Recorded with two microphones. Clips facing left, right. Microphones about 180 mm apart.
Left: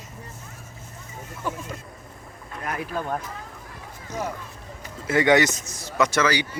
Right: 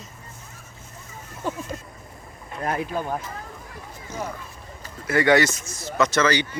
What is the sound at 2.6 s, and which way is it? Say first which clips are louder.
Speech: right 4 dB; 25° right (ahead or behind).